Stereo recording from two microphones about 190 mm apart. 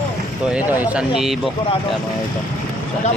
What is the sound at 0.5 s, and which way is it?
Speech, 10° right (ahead or behind).